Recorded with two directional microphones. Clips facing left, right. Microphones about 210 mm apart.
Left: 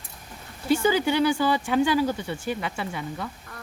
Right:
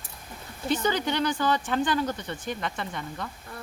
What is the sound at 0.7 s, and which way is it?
Speech, 10° left (ahead or behind).